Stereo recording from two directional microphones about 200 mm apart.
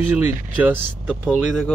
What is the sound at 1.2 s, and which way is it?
Speech, 5° left (ahead or behind).